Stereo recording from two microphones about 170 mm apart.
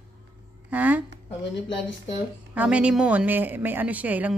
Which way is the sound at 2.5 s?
5° right (ahead or behind).